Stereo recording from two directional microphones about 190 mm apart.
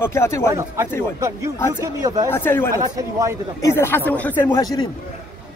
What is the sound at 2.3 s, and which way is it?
Speech, 10° left (ahead or behind).